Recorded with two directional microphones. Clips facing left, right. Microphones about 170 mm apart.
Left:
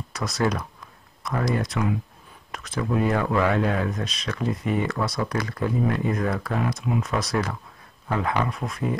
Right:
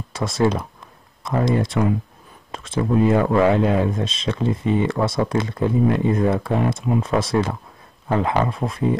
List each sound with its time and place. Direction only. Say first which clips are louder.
0.1 s speech: right 5 dB; 25° right (ahead or behind)